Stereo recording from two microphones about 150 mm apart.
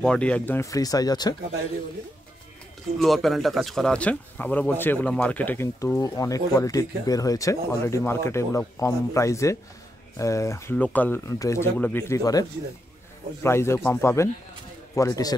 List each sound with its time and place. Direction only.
0.0 s speech: 5° left (ahead or behind); by 1.3 s 25° left (ahead or behind)
3.0 s speech: centre (ahead or behind); by 15.3 s 20° left (ahead or behind)